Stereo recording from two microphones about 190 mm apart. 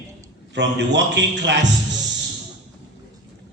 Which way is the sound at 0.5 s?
65° right (ahead or behind).